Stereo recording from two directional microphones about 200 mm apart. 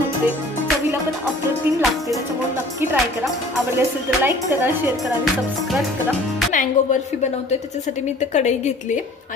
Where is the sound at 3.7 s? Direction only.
10° right (ahead or behind).